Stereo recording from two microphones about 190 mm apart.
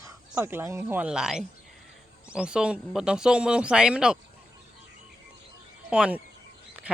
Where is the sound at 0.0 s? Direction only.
10° right (ahead or behind).